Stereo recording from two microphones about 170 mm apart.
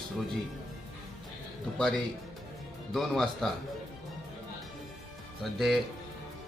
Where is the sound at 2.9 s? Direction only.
Centre (ahead or behind).